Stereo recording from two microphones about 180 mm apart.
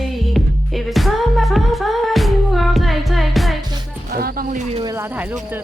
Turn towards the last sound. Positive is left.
turn(degrees=-10)  # may be behind; listen again after turning